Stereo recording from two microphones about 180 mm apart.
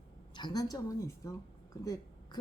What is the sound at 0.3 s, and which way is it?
A woman's voice, 25° left (ahead or behind).